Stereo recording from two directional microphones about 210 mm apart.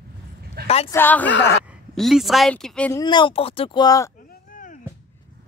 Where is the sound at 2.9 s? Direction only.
20° left (ahead or behind).